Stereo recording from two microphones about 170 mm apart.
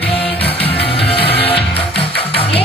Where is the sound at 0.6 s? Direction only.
35° left (ahead or behind).